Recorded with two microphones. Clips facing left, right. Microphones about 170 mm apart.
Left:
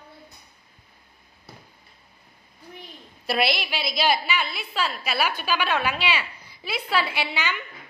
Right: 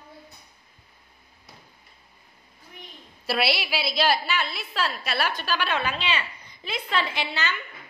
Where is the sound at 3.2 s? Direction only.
5° right (ahead or behind).